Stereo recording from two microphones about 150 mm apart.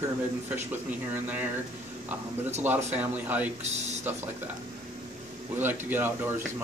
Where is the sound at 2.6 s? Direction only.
10° right (ahead or behind).